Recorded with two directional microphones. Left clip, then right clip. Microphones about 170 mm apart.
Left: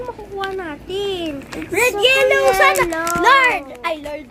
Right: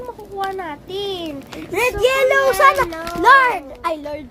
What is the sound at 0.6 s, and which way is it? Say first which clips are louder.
A child's voice: left 2 dB; 15° right (ahead or behind).